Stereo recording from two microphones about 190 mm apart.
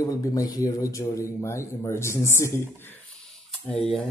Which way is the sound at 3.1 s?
Centre (ahead or behind).